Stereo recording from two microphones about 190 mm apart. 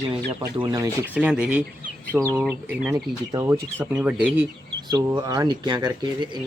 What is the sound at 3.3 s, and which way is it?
Speech, 15° right (ahead or behind).